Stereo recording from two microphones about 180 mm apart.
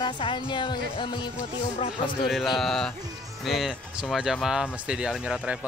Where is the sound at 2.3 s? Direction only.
Centre (ahead or behind).